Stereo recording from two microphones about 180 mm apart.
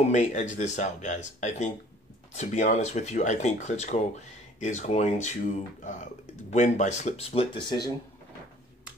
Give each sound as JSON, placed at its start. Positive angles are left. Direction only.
{"t": 0.1, "sound": "speech", "side_deg": 40}